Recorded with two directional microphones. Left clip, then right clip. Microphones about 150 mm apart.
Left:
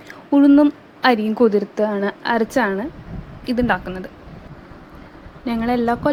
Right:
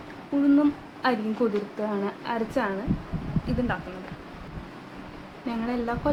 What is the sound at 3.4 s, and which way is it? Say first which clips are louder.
Speech: left 10 dB; 65° left (ahead or behind).